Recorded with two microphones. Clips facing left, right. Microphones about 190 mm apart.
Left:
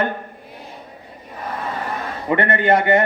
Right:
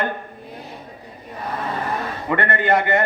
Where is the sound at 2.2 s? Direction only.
20° left (ahead or behind).